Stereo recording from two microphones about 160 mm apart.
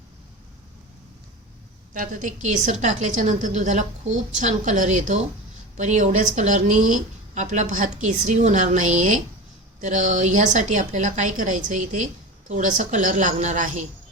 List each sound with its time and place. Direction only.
1.9 s speech: 55° right (ahead or behind)